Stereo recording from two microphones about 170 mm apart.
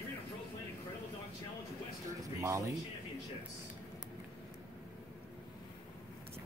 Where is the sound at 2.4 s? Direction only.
20° right (ahead or behind).